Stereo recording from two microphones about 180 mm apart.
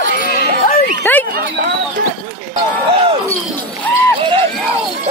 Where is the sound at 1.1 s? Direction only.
10° left (ahead or behind).